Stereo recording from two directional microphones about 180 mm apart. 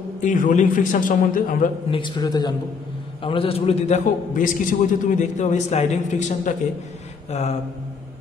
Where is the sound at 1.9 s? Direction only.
25° left (ahead or behind).